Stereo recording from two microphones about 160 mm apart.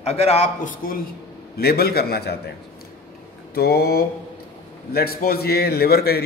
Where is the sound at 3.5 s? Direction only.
75° left (ahead or behind).